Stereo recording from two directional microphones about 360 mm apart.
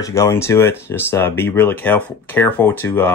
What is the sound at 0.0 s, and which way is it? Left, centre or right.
Speech, centre.